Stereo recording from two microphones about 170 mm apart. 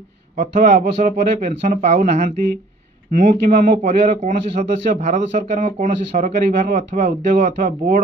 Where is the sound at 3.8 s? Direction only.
45° right (ahead or behind).